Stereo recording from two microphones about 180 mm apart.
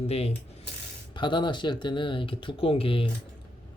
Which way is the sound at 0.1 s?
35° left (ahead or behind).